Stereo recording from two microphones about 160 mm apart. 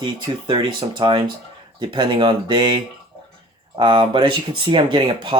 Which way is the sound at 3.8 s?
30° right (ahead or behind).